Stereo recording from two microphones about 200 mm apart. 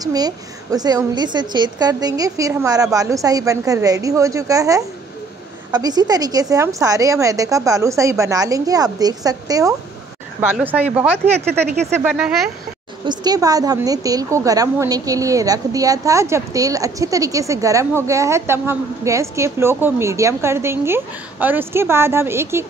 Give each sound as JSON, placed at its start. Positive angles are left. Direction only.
{"t": 0.0, "sound": "a woman's voice", "side_deg": -20}
{"t": 13.0, "sound": "a woman's voice", "side_deg": -20}